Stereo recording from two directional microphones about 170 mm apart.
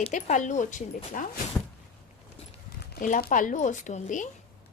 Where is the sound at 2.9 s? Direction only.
55° left (ahead or behind).